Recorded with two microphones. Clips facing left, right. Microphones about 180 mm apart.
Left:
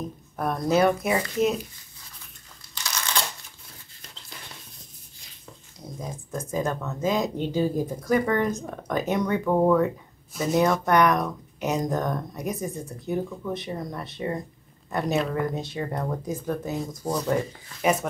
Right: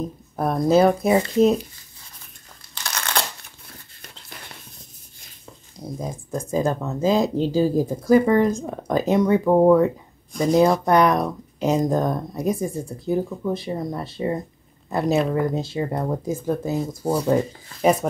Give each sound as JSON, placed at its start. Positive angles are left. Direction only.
{"t": 0.4, "sound": "speech", "side_deg": -30}
{"t": 2.7, "sound": "crumpling", "side_deg": -60}
{"t": 5.9, "sound": "speech", "side_deg": -30}